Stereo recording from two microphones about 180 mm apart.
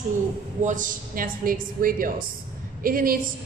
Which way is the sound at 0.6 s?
45° right (ahead or behind).